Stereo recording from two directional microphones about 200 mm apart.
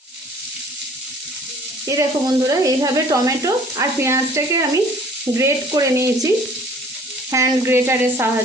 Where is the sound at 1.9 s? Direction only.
15° right (ahead or behind).